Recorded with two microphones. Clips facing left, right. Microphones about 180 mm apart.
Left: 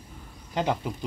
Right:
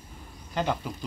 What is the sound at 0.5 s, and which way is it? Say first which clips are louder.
Speech: left 2 dB; 20° left (ahead or behind).